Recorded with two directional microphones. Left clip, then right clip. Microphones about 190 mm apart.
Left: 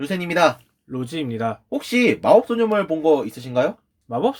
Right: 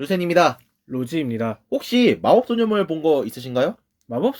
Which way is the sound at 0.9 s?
30° right (ahead or behind).